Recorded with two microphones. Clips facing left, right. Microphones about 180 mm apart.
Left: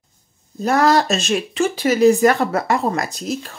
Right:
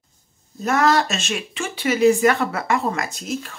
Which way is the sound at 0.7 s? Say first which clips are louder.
Left 3 dB; 35° left (ahead or behind).